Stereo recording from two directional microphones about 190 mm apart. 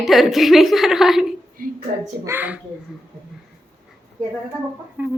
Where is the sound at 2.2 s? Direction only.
10° right (ahead or behind).